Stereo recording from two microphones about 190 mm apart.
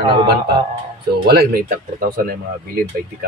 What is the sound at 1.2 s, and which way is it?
Speech, 50° right (ahead or behind).